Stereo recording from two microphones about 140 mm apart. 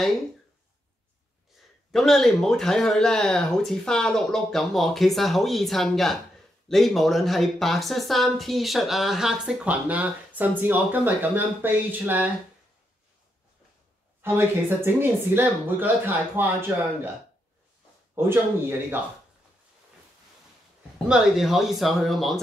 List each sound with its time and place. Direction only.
1.9 s speech: centre (ahead or behind); by 12.3 s 15° right (ahead or behind)
14.2 s speech: 15° right (ahead or behind)
18.1 s speech: 15° right (ahead or behind)
21.1 s speech: 5° right (ahead or behind)